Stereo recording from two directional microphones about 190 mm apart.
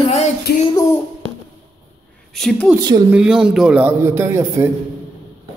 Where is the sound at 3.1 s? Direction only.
5° right (ahead or behind).